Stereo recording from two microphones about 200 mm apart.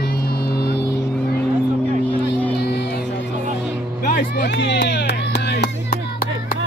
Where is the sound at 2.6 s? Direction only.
55° left (ahead or behind).